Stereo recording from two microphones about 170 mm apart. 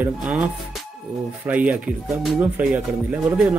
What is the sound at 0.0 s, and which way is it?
Speech, 10° right (ahead or behind).